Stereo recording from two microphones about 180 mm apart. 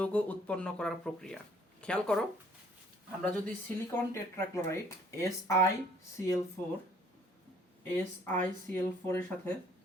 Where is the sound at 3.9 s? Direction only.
15° left (ahead or behind).